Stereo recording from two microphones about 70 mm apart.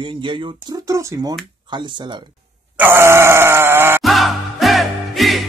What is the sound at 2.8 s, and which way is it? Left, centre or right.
Grunt, right.